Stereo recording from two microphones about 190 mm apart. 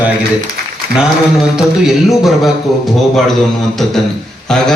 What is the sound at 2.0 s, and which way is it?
Speech, centre (ahead or behind).